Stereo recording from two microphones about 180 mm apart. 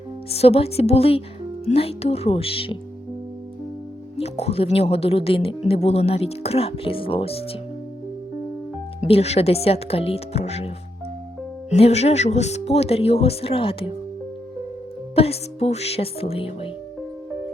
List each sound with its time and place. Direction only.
0.3 s speech: 35° left (ahead or behind)
4.2 s speech: 35° left (ahead or behind)
9.0 s speech: 35° left (ahead or behind)
11.7 s speech: 35° left (ahead or behind)
15.1 s speech: 35° left (ahead or behind)